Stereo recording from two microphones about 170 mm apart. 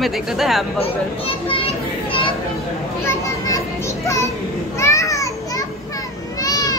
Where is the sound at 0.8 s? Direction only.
35° left (ahead or behind).